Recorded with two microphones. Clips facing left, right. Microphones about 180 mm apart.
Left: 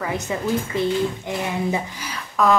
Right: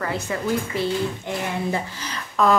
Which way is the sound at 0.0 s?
15° left (ahead or behind).